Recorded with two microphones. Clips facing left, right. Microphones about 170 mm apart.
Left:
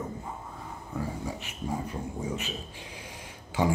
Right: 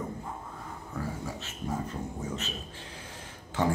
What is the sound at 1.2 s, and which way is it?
Speech, 15° left (ahead or behind).